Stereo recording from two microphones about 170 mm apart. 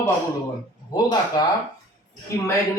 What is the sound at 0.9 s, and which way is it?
Speech, 25° left (ahead or behind).